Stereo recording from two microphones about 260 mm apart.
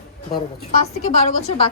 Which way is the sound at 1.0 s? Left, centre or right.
Left.